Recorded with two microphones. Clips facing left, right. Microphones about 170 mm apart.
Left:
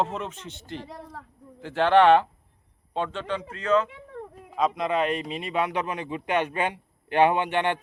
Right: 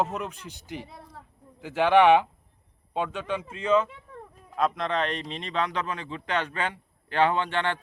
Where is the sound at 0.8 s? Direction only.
80° left.